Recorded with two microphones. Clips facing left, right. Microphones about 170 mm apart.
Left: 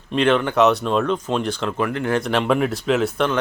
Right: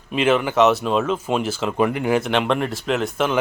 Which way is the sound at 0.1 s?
5° right (ahead or behind).